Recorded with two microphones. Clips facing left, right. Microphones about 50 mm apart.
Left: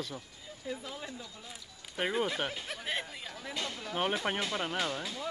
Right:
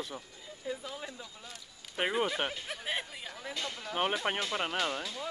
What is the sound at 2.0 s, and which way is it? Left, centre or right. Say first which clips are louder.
Speech: right 1 dB; centre.